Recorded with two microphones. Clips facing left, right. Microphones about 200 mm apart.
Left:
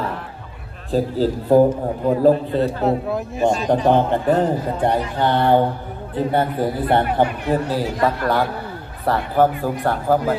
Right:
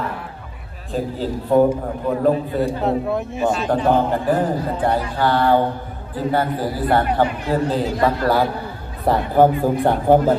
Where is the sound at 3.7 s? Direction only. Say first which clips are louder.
Left 1 dB; 20° left (ahead or behind).